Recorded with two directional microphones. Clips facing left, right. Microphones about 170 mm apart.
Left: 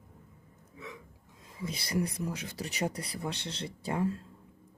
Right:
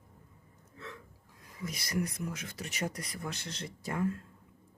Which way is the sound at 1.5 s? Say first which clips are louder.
Left 2 dB; 30° left (ahead or behind).